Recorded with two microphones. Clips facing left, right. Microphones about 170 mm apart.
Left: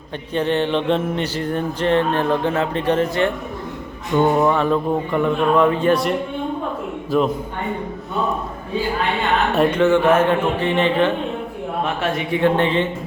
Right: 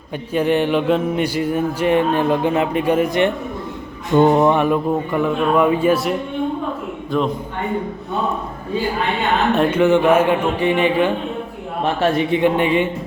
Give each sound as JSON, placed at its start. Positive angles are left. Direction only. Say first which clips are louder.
{"t": 0.3, "sound": "speech", "louder": "right 2 dB", "side_deg": -10}
{"t": 4.1, "sound": "speech", "louder": "right 3 dB", "side_deg": -20}
{"t": 9.6, "sound": "speech", "louder": "even", "side_deg": -5}
{"t": 12.3, "sound": "speech", "louder": "right 1 dB", "side_deg": -15}